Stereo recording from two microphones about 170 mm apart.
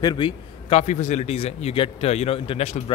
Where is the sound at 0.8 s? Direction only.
45° left (ahead or behind).